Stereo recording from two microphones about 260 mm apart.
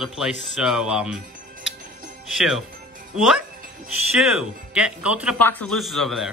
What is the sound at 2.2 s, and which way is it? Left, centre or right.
Speech, centre.